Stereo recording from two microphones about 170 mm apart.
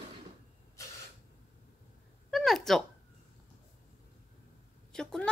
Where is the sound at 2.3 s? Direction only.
Centre (ahead or behind).